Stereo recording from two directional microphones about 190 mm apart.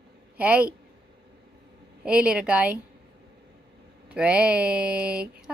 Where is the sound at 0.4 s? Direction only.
5° right (ahead or behind).